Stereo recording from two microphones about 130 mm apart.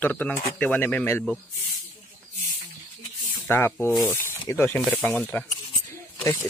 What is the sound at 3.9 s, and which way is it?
Speech, centre (ahead or behind).